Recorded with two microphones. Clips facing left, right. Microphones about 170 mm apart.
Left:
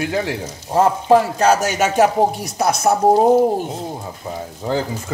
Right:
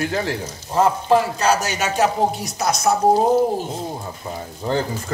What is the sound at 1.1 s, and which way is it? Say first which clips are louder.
Speech: left 3 dB; 50° left (ahead or behind).